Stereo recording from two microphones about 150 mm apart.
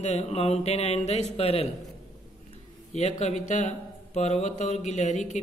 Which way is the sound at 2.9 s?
50° left (ahead or behind).